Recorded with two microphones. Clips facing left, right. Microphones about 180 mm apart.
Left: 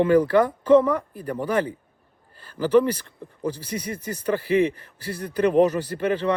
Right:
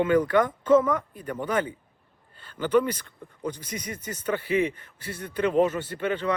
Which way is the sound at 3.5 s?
30° left (ahead or behind).